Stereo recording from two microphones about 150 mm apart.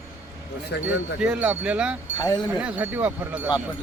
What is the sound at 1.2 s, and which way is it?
Speech, 5° right (ahead or behind).